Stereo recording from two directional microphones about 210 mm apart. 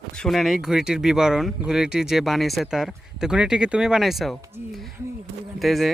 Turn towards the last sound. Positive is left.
turn(degrees=0)  # may be behind; listen again after turning